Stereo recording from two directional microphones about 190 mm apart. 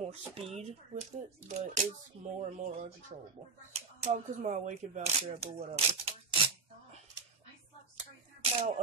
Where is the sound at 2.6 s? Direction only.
35° right (ahead or behind).